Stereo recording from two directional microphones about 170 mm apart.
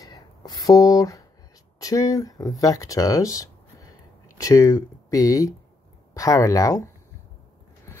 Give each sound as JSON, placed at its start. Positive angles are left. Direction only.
{"t": 0.0, "sound": "writing", "side_deg": 20}
{"t": 1.8, "sound": "speech", "side_deg": 20}